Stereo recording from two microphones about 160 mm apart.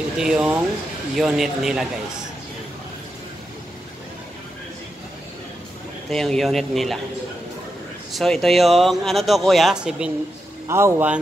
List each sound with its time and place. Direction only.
0.2 s a man's voice: 5° right (ahead or behind)
6.0 s a man's voice: 5° left (ahead or behind)
8.1 s a man's voice: centre (ahead or behind)
10.7 s speech: 15° right (ahead or behind)